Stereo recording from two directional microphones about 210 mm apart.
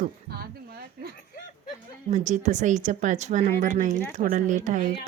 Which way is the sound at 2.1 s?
35° right (ahead or behind).